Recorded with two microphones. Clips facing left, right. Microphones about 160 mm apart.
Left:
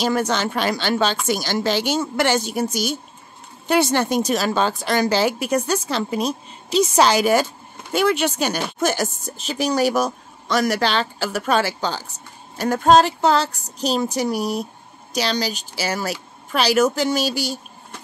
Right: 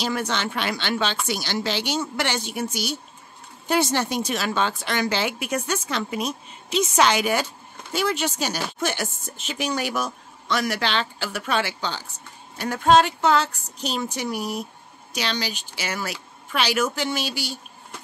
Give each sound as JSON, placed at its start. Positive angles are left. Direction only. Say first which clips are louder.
{"t": 0.0, "sound": "a woman's voice", "louder": "left 5 dB", "side_deg": 45}
{"t": 3.6, "sound": "a woman's voice", "louder": "left 4 dB", "side_deg": 65}
{"t": 7.9, "sound": "a woman's voice", "louder": "left 6 dB", "side_deg": 60}